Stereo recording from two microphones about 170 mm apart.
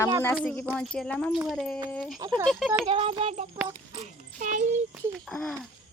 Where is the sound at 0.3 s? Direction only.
5° left (ahead or behind).